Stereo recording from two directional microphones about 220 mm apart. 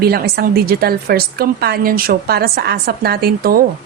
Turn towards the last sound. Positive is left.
turn(degrees=-45)  # may be behind; listen again after turning